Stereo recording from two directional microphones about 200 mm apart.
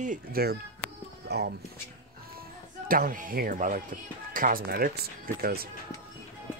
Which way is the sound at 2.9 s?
45° right (ahead or behind).